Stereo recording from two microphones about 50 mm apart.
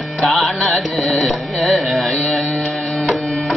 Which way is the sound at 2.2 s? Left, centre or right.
Centre.